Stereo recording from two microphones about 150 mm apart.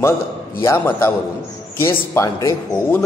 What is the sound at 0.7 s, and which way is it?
Speech, 15° left (ahead or behind).